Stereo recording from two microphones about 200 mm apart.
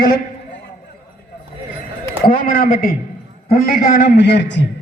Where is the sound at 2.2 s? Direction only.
45° left (ahead or behind); by 4.7 s 60° left (ahead or behind).